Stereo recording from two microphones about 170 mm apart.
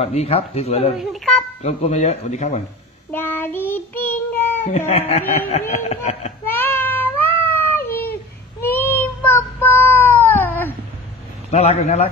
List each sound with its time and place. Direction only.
0.0 s speech: 35° left (ahead or behind)
0.9 s speech: centre (ahead or behind)
1.6 s speech: 40° left (ahead or behind)
3.1 s child singing: 10° left (ahead or behind)
4.6 s speech: 45° left (ahead or behind)
6.4 s meow: 10° left (ahead or behind)
8.0 s child singing: 10° left (ahead or behind)
11.5 s speech: 40° left (ahead or behind)